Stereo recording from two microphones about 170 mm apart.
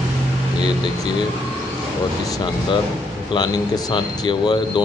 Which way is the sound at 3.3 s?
25° left (ahead or behind).